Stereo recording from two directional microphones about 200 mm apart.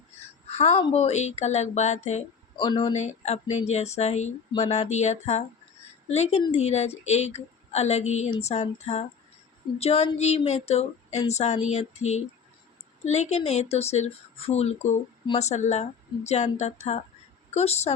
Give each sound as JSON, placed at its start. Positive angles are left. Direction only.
{"t": 0.5, "sound": "a woman's voice", "side_deg": 30}
{"t": 2.6, "sound": "a woman's voice", "side_deg": 25}